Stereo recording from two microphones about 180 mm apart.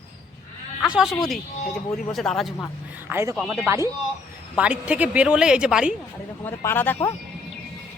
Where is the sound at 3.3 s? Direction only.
Centre (ahead or behind).